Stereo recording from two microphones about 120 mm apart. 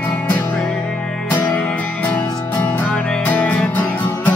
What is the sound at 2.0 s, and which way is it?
Music, 15° left (ahead or behind).